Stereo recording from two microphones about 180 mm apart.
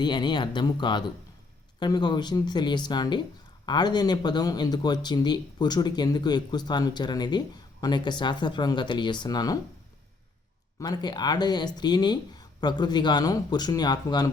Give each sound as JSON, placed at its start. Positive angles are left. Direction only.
{"t": 0.0, "sound": "speech", "side_deg": 25}
{"t": 10.8, "sound": "speech", "side_deg": 25}